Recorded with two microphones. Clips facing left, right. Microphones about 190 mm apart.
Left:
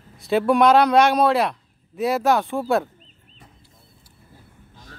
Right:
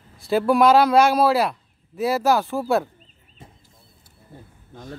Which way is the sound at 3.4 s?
25° right (ahead or behind).